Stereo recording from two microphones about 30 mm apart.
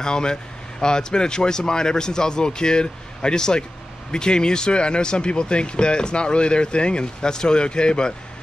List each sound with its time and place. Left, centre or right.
0.0 s speech: left